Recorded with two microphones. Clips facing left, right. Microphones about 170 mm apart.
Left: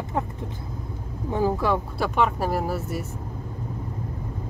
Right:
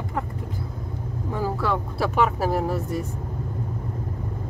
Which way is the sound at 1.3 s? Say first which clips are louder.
Left 3 dB; 20° left (ahead or behind).